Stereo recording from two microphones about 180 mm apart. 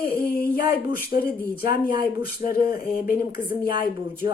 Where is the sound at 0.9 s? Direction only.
55° left (ahead or behind).